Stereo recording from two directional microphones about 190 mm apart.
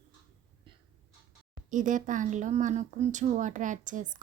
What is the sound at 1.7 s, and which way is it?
Speech, 40° right (ahead or behind).